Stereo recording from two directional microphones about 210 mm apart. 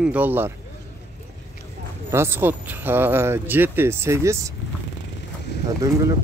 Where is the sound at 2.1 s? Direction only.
10° right (ahead or behind).